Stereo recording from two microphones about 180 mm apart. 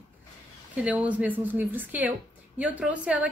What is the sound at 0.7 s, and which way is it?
A woman's voice, 10° right (ahead or behind).